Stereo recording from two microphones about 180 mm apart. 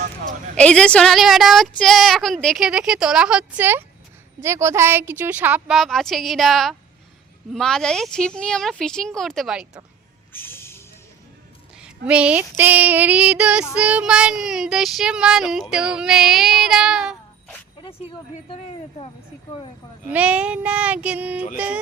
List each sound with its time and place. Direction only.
0.5 s child singing: 5° left (ahead or behind); by 3.8 s 10° right (ahead or behind)
4.4 s a woman's voice: 15° right (ahead or behind); by 6.7 s centre (ahead or behind)
7.5 s child singing: 5° left (ahead or behind)
10.3 s music: 10° left (ahead or behind)
11.8 s a woman's voice: 5° right (ahead or behind)
13.7 s child singing: 5° right (ahead or behind)
18.4 s speech: 30° left (ahead or behind)
20.1 s a woman's voice: 5° right (ahead or behind)